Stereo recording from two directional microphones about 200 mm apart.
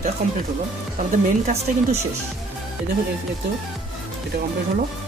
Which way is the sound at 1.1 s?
35° right (ahead or behind).